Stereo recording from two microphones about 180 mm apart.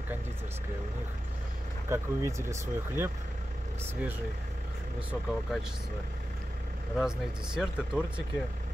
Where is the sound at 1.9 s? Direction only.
15° right (ahead or behind).